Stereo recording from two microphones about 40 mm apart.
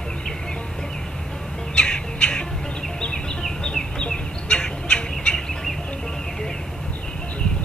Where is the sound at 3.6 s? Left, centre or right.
Left.